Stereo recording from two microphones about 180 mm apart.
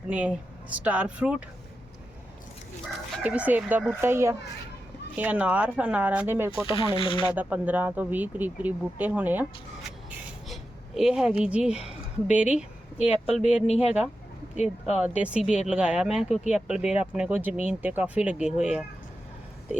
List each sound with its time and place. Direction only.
0.1 s speech: 5° right (ahead or behind)
3.2 s speech: 10° right (ahead or behind)
6.7 s speech: 30° left (ahead or behind)
7.3 s speech: 10° right (ahead or behind)
10.1 s a sound: centre (ahead or behind)
12.3 s speech: 5° right (ahead or behind)
13.7 s speech: 35° left (ahead or behind)
14.9 s speech: 5° right (ahead or behind)